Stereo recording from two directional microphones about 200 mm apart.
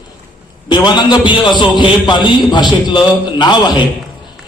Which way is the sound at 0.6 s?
20° left (ahead or behind).